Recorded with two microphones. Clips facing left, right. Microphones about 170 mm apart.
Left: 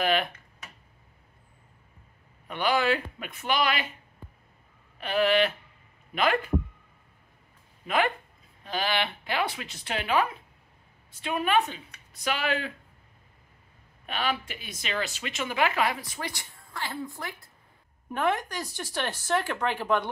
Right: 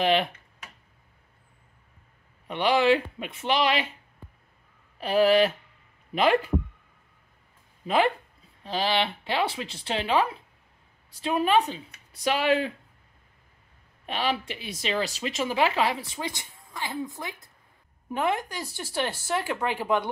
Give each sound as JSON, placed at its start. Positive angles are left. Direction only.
{"t": 0.0, "sound": "speech", "side_deg": -25}
{"t": 2.4, "sound": "speech", "side_deg": -25}
{"t": 5.0, "sound": "speech", "side_deg": -35}
{"t": 7.8, "sound": "speech", "side_deg": -30}
{"t": 14.0, "sound": "speech", "side_deg": -30}